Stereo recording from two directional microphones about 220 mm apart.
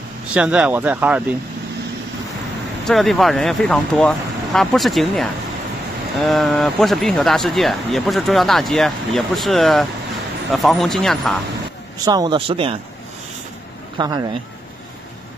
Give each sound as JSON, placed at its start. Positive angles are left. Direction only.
{"t": 0.3, "sound": "speech", "side_deg": -5}
{"t": 2.9, "sound": "speech", "side_deg": 0}
{"t": 12.0, "sound": "speech", "side_deg": -15}
{"t": 13.9, "sound": "speech", "side_deg": -15}